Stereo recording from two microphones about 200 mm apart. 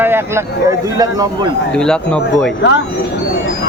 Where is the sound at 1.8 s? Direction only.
5° left (ahead or behind).